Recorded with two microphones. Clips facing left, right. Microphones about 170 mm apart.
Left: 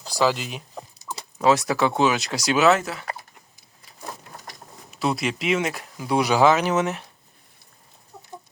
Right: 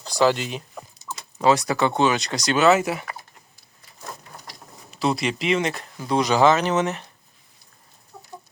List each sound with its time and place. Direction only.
0.0 s speech: 5° left (ahead or behind)
2.8 s speech: 15° right (ahead or behind)
4.9 s speech: centre (ahead or behind)